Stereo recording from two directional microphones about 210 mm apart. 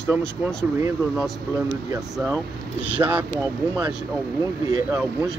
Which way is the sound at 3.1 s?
10° right (ahead or behind).